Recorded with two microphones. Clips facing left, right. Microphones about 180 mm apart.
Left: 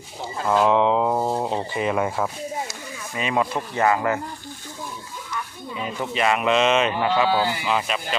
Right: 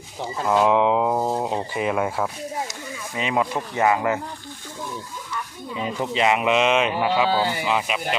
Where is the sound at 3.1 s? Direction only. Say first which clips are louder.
Even; 20° right (ahead or behind).